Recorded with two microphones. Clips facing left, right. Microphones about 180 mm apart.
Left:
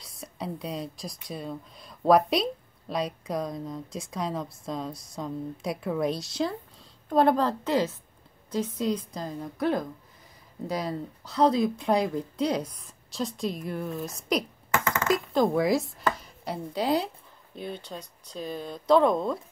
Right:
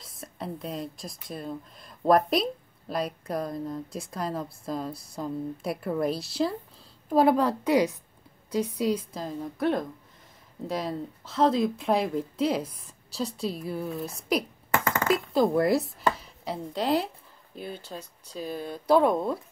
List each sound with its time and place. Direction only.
0.0 s speech: centre (ahead or behind)
13.4 s a woman's voice: 35° right (ahead or behind)
13.7 s speech: 5° right (ahead or behind)